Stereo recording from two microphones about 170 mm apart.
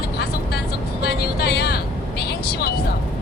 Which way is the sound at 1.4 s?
70° left (ahead or behind).